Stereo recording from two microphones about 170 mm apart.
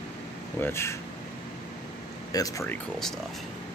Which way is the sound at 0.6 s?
15° left (ahead or behind).